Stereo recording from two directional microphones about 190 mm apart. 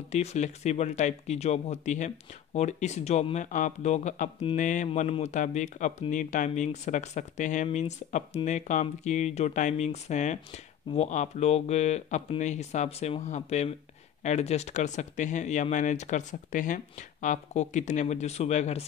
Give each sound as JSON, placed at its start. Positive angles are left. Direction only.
{"t": 0.1, "sound": "speech", "side_deg": 35}